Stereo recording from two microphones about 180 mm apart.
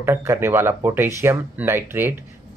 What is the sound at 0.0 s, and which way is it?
Speech, 15° right (ahead or behind).